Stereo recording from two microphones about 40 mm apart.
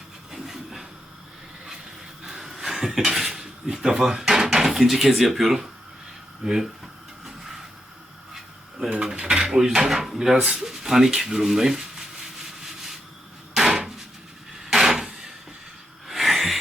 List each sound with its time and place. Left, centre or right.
0.3 s train: centre
2.2 s dishes: centre
3.7 s speech: centre
7.3 s train: centre
9.0 s speech: centre
10.3 s speech: right
10.6 s speech: centre
13.5 s a sound: centre